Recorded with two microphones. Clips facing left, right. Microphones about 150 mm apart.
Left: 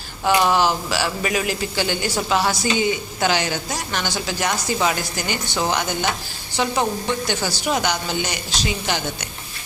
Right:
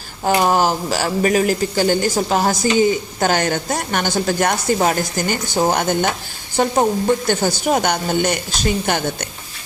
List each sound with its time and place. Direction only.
0.3 s speech: 40° right (ahead or behind)